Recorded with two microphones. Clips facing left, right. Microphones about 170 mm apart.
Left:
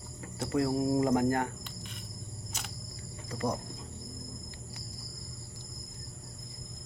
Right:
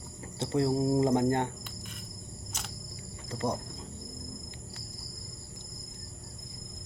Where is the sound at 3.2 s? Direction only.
25° right (ahead or behind).